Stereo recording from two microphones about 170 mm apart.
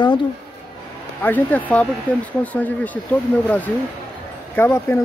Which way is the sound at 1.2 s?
10° left (ahead or behind).